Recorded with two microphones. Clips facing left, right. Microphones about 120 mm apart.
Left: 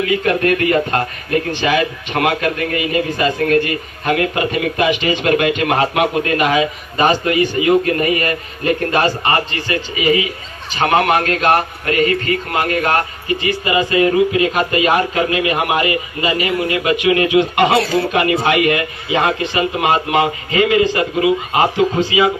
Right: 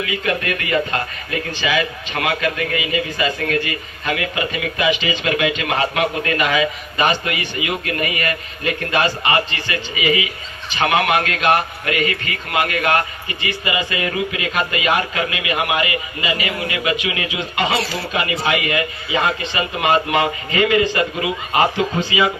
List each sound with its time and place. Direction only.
0.0 s a man's voice: 50° left (ahead or behind)
20.2 s speech: 15° left (ahead or behind)